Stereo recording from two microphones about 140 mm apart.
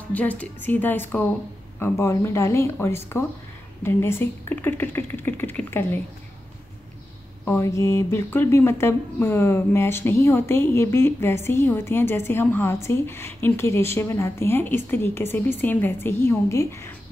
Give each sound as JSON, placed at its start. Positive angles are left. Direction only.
{"t": 0.1, "sound": "a woman's voice", "side_deg": 10}
{"t": 7.4, "sound": "a woman's voice", "side_deg": 20}